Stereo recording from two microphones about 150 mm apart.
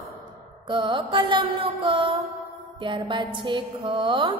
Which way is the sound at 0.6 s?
30° right (ahead or behind).